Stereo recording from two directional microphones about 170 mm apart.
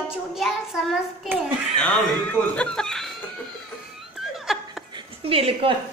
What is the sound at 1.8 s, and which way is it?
Speech, 5° left (ahead or behind).